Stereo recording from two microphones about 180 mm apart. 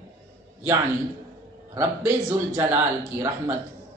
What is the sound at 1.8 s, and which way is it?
Speech, 15° right (ahead or behind).